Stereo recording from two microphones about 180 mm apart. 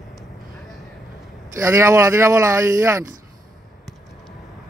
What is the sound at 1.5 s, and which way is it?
Speech, 15° right (ahead or behind).